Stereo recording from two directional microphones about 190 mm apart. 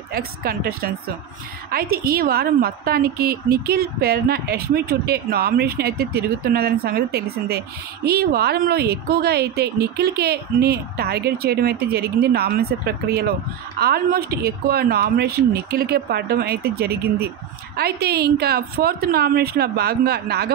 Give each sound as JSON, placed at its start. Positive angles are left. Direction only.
{"t": 0.1, "sound": "a woman's voice", "side_deg": -50}